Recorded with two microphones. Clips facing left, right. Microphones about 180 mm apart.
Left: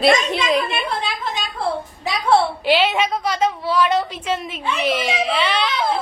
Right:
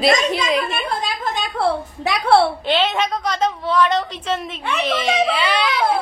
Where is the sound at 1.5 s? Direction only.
75° right (ahead or behind).